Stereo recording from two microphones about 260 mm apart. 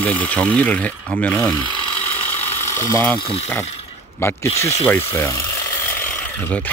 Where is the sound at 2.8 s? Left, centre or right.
Centre.